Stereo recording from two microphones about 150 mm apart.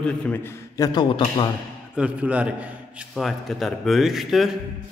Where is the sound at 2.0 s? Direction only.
10° right (ahead or behind).